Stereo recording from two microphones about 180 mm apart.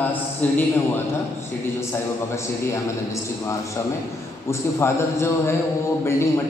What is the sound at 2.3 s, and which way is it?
A man's voice, 15° left (ahead or behind).